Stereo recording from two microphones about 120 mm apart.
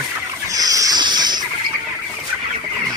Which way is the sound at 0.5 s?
30° right (ahead or behind).